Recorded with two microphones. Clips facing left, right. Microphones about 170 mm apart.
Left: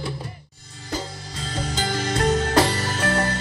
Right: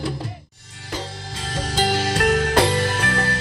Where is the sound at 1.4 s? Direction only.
90° right.